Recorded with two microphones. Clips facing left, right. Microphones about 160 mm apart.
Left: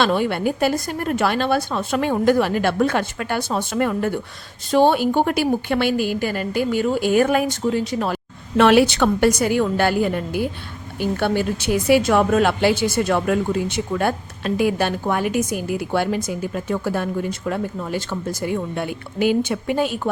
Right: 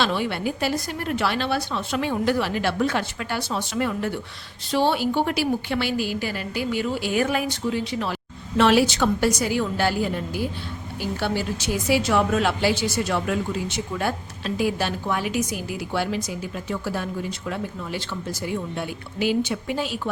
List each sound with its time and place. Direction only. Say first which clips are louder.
0.0 s a woman's voice: left 5 dB; 50° left (ahead or behind)